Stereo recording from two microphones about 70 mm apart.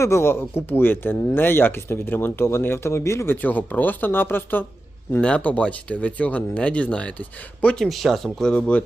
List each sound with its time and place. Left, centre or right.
0.0 s speech: left
3.4 s speech: left
5.2 s speech: centre
7.8 s speech: centre